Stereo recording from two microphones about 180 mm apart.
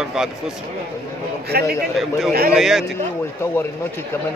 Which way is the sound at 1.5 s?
55° right (ahead or behind).